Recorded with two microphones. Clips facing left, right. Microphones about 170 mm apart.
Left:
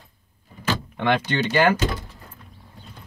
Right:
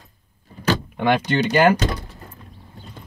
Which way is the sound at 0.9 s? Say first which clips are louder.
Right 2 dB; 10° right (ahead or behind).